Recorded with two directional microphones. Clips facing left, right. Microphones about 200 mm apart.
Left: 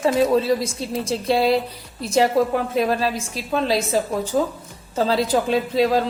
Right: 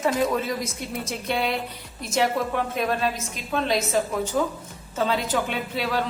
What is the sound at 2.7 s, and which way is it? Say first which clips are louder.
A woman's voice: left 4 dB; 35° left (ahead or behind).